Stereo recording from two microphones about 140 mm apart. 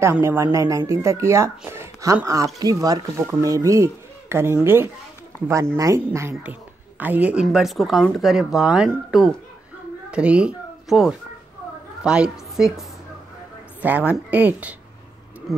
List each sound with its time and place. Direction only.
0.0 s a woman's voice: 15° right (ahead or behind)